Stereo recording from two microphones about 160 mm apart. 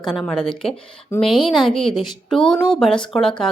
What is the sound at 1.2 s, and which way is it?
Speech, 30° left (ahead or behind).